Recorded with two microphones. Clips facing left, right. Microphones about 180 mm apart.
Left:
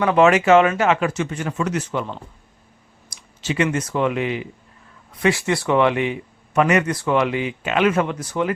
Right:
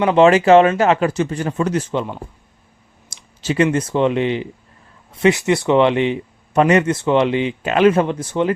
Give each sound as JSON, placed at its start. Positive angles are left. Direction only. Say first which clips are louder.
{"t": 0.0, "sound": "speech", "louder": "right 3 dB", "side_deg": -25}
{"t": 3.4, "sound": "a man's voice", "louder": "right 5 dB", "side_deg": -35}